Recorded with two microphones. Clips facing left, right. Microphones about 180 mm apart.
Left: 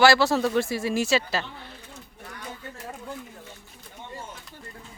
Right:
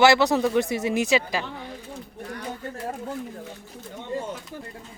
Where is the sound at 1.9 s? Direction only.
45° right (ahead or behind).